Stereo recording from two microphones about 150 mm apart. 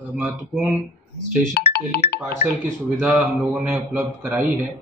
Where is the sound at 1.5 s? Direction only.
90° left.